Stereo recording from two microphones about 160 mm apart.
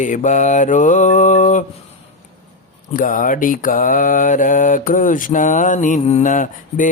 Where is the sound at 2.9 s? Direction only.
55° left (ahead or behind).